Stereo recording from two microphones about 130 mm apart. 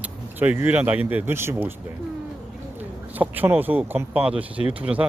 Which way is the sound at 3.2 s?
15° right (ahead or behind).